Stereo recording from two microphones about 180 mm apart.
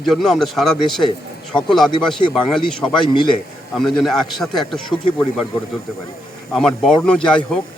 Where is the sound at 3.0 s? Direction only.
25° left (ahead or behind).